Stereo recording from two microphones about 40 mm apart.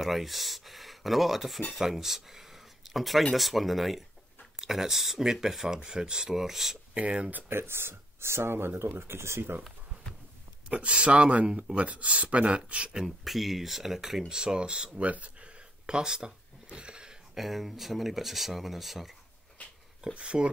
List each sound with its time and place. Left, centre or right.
0.0 s speech: centre
6.9 s speech: right
7.4 s speech: right
10.9 s speech: right
12.9 s speech: centre
14.3 s speech: centre
15.0 s speech: right
15.9 s a sound: centre
17.4 s speech: centre
20.2 s speech: right